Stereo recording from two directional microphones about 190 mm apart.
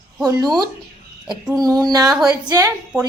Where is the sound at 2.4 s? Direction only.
20° right (ahead or behind).